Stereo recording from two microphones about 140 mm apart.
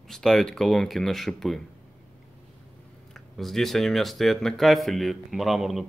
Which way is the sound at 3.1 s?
Centre (ahead or behind).